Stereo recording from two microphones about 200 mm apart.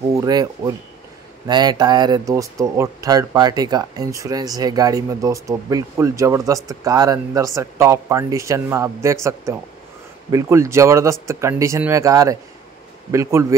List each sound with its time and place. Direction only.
0.1 s speech: 20° right (ahead or behind)